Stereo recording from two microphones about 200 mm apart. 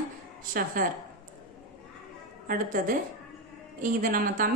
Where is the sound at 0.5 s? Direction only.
45° right (ahead or behind).